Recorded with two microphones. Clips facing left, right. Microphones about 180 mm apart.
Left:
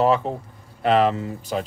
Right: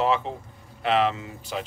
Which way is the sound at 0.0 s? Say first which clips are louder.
Left 5 dB; 40° left (ahead or behind).